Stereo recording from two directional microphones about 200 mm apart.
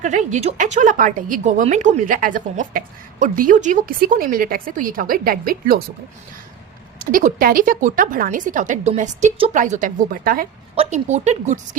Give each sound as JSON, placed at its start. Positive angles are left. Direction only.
{"t": 0.0, "sound": "a woman's voice", "side_deg": -40}
{"t": 7.0, "sound": "a woman's voice", "side_deg": -40}
{"t": 10.8, "sound": "a woman's voice", "side_deg": -35}